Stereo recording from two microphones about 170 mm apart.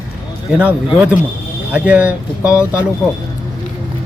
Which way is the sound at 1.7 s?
10° right (ahead or behind).